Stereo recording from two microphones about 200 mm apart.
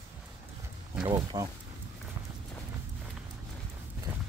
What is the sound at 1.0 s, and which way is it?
Speech, 20° right (ahead or behind).